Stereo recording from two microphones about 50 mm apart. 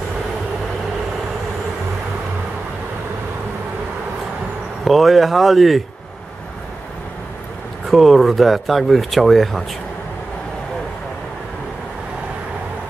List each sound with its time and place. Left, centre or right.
4.8 s speech: centre
7.9 s speech: centre